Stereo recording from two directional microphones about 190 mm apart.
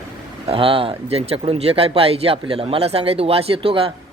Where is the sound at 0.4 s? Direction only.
30° right (ahead or behind).